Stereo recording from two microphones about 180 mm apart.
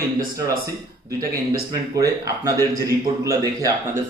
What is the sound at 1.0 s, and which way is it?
A man's voice, 20° right (ahead or behind).